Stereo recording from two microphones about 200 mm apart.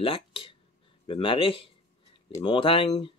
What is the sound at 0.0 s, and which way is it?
Speech, 25° left (ahead or behind).